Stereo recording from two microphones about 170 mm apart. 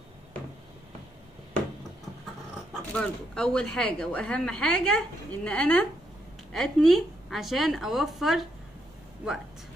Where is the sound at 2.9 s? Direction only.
5° left (ahead or behind).